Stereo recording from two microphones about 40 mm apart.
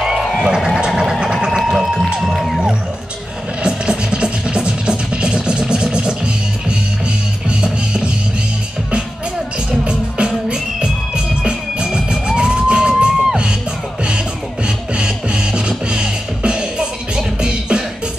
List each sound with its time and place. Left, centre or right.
0.0 s music: centre
0.8 s a sound: centre
1.7 s music: centre
3.6 s music: right
9.7 s music: right